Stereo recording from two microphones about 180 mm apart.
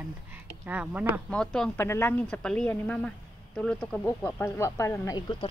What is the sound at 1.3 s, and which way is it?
Speech, 5° left (ahead or behind).